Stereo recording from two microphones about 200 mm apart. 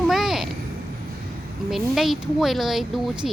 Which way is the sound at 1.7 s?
Centre (ahead or behind).